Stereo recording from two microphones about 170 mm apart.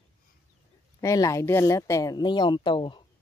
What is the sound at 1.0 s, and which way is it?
Speech, 20° left (ahead or behind).